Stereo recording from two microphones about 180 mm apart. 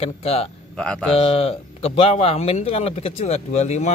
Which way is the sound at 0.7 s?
5° left (ahead or behind).